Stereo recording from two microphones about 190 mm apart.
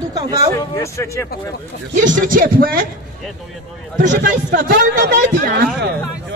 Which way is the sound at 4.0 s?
50° right (ahead or behind).